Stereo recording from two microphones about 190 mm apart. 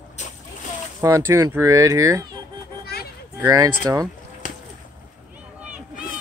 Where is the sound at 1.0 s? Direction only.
15° right (ahead or behind).